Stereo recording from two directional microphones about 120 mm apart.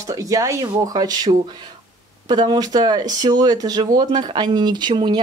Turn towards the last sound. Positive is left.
turn(degrees=-40)  # may be behind; listen again after turning